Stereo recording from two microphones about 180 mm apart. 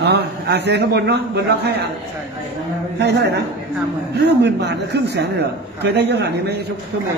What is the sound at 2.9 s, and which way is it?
A man's voice, 70° right (ahead or behind).